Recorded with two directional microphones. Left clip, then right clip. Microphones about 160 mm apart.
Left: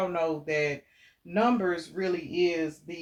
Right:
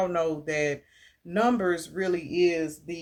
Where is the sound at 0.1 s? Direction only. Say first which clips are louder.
Right 1 dB; 50° right (ahead or behind).